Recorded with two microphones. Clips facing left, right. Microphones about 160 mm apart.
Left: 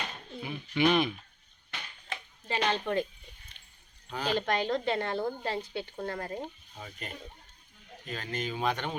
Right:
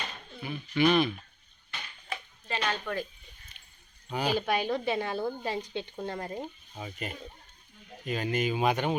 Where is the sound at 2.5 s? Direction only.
25° left (ahead or behind).